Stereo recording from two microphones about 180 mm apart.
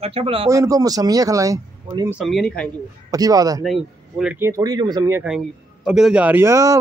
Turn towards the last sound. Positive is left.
turn(degrees=-15)  # may be behind; listen again after turning